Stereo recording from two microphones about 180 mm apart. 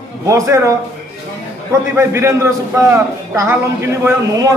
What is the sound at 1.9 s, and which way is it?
A man's voice, 15° right (ahead or behind).